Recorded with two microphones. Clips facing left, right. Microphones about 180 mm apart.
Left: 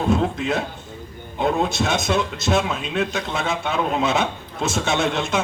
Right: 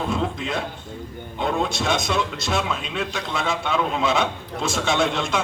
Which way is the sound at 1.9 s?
5° left (ahead or behind).